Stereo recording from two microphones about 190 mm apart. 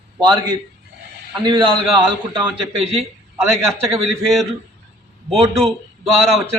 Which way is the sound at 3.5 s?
Centre (ahead or behind).